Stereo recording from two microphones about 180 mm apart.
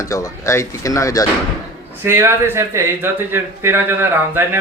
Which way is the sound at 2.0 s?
15° right (ahead or behind).